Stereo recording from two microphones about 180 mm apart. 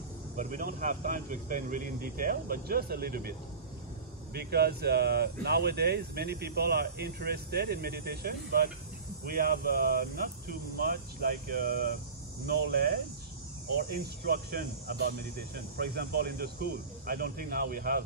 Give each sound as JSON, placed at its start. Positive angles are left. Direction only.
{"t": 0.4, "sound": "speech", "side_deg": -50}